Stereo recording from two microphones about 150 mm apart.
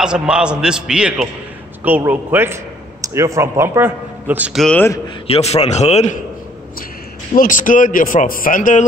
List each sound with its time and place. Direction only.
0.0 s a man's voice: 5° right (ahead or behind)
4.6 s a man's voice: 5° left (ahead or behind)
5.2 s a man's voice: 40° left (ahead or behind)
7.3 s speech: 60° left (ahead or behind)